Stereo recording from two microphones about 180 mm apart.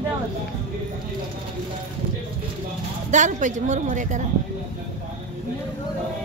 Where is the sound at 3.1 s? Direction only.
40° right (ahead or behind).